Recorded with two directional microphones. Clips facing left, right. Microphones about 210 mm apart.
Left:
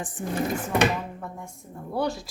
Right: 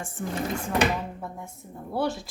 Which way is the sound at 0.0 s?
15° left (ahead or behind).